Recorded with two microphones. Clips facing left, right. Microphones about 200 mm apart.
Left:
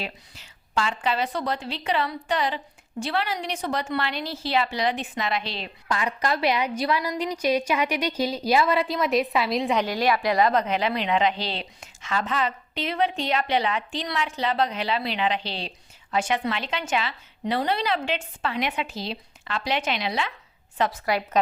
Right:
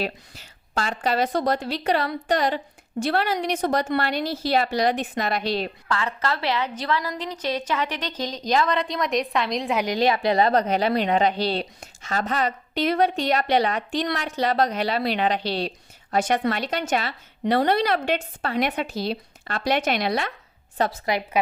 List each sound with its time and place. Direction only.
0.0 s a woman's voice: 40° right (ahead or behind)
5.9 s a woman's voice: 15° left (ahead or behind)
9.8 s a woman's voice: 20° right (ahead or behind); by 20.3 s 45° right (ahead or behind)
20.7 s a woman's voice: 30° right (ahead or behind)